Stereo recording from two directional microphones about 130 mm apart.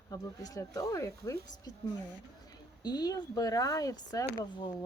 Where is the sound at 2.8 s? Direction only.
30° left (ahead or behind).